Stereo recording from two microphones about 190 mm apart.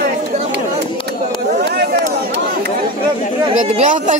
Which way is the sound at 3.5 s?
40° right (ahead or behind).